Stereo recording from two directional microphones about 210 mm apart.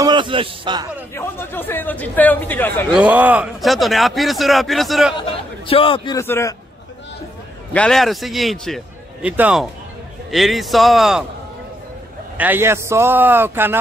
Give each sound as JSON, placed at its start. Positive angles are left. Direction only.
{"t": 0.0, "sound": "a man's voice", "side_deg": -20}
{"t": 1.1, "sound": "speech", "side_deg": 10}
{"t": 2.9, "sound": "a man's voice", "side_deg": -5}
{"t": 5.2, "sound": "a man's voice", "side_deg": 25}
{"t": 6.1, "sound": "speech", "side_deg": 15}
{"t": 7.7, "sound": "a man's voice", "side_deg": 5}
{"t": 12.4, "sound": "a man's voice", "side_deg": -10}